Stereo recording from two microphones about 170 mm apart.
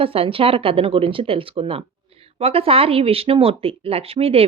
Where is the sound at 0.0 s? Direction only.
35° right (ahead or behind).